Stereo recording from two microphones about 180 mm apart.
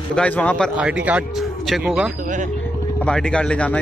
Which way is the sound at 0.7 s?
5° right (ahead or behind).